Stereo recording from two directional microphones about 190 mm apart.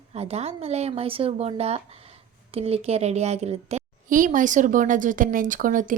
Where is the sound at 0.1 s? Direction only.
35° right (ahead or behind).